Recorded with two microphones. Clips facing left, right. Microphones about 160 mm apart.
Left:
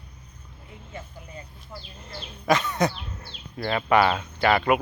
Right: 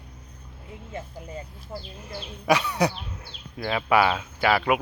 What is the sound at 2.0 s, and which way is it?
Speech, 10° right (ahead or behind).